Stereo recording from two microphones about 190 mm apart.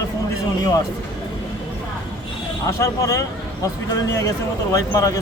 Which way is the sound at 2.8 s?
15° left (ahead or behind).